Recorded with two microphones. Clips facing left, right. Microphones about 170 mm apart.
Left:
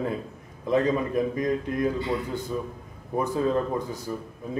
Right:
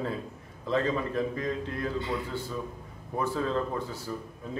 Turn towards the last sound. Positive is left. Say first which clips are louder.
# left 4 dB
turn(degrees=15)  # may be behind; listen again after turning